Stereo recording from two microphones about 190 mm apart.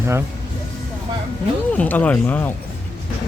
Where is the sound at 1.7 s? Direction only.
10° left (ahead or behind).